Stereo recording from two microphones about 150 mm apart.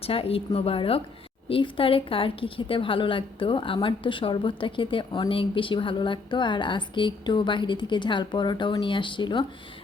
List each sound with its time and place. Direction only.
0.0 s a woman's voice: 40° left (ahead or behind)